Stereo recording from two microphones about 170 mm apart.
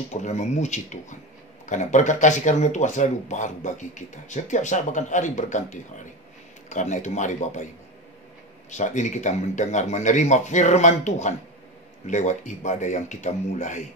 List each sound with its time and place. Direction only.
0.1 s speech: 45° left (ahead or behind)
8.6 s speech: 45° left (ahead or behind)